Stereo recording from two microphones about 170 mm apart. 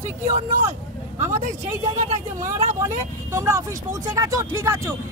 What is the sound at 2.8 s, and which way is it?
Speech, 15° right (ahead or behind).